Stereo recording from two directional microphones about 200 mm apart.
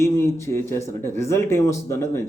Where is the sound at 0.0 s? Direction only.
15° left (ahead or behind).